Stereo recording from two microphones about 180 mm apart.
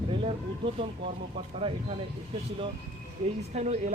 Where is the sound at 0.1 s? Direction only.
30° right (ahead or behind).